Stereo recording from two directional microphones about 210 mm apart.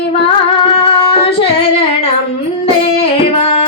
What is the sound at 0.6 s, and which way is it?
Singing, 25° left (ahead or behind).